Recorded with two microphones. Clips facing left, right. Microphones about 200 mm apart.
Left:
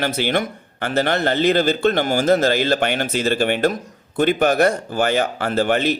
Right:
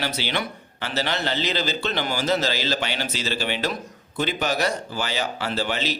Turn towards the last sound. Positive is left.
turn(degrees=55)  # may be behind; listen again after turning